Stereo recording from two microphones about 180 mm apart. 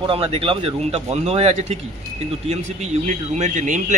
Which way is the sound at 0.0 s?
30° right (ahead or behind).